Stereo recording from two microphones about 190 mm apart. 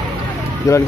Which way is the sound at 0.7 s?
15° left (ahead or behind).